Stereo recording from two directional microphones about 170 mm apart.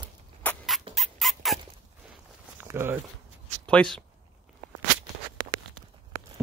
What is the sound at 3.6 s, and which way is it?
Speech, 5° left (ahead or behind).